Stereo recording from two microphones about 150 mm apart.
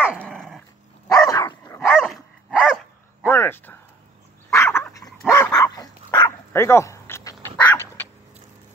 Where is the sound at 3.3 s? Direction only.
15° left (ahead or behind).